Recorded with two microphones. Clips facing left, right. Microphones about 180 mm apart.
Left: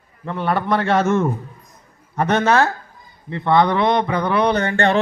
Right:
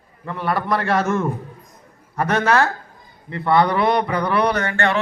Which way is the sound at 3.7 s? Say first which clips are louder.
Left 1 dB; centre (ahead or behind).